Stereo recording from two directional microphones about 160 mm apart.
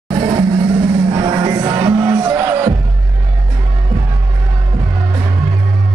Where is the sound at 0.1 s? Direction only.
35° right (ahead or behind).